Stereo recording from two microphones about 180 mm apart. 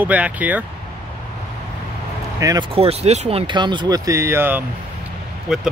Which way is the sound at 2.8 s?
35° right (ahead or behind).